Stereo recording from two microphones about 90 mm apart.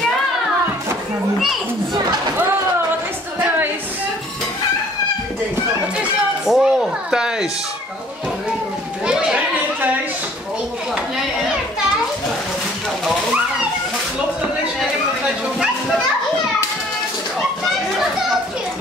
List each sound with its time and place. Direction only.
3.3 s a sound: 20° right (ahead or behind)
5.9 s music: 5° right (ahead or behind)
9.0 s children playing: 10° right (ahead or behind)